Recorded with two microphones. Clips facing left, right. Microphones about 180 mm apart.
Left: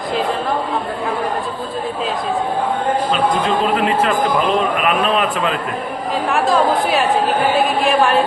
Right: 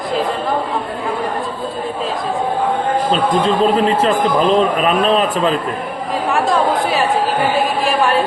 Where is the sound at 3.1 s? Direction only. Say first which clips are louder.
Right 4 dB; 30° right (ahead or behind).